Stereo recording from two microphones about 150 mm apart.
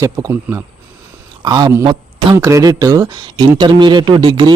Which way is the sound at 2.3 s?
20° right (ahead or behind).